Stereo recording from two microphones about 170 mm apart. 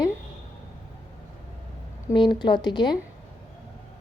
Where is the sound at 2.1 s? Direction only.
25° left (ahead or behind).